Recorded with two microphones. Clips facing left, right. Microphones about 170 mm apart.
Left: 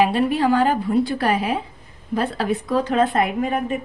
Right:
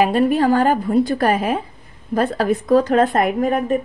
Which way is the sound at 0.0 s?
45° right (ahead or behind).